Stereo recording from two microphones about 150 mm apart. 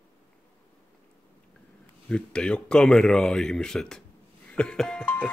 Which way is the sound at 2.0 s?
5° left (ahead or behind).